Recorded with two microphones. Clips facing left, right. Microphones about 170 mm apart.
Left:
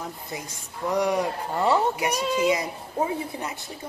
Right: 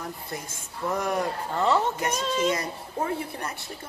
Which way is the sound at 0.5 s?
15° left (ahead or behind).